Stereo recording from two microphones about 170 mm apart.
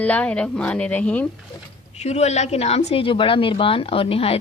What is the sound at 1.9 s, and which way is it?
A woman's voice, 40° left (ahead or behind).